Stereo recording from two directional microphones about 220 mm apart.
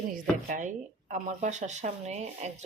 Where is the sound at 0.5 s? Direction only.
35° right (ahead or behind).